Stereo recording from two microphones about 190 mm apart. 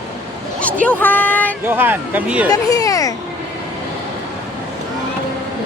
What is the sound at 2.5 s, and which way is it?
Speech, 20° left (ahead or behind).